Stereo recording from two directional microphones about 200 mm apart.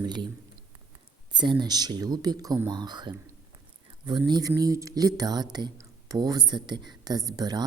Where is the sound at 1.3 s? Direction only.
20° right (ahead or behind).